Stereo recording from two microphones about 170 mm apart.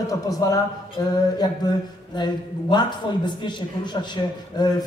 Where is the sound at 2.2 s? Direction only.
25° left (ahead or behind).